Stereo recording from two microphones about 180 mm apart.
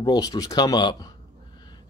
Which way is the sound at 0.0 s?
20° left (ahead or behind).